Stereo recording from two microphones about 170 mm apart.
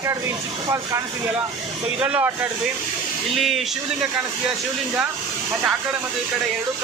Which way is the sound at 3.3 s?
Centre (ahead or behind).